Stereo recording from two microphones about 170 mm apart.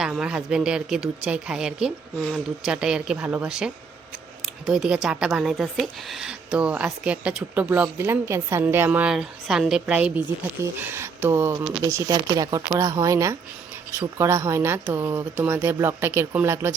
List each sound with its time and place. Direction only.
0.0 s speech: 5° right (ahead or behind)